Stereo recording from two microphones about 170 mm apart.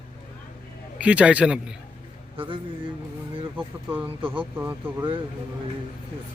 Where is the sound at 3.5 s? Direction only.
10° right (ahead or behind).